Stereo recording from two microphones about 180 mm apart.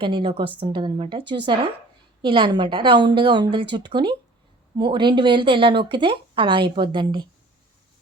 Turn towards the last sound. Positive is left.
turn(degrees=-25)  # may be behind; listen again after turning